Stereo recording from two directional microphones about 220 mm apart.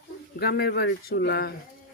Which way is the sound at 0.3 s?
45° left (ahead or behind).